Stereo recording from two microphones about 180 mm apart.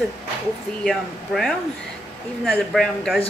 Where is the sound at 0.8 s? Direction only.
Centre (ahead or behind).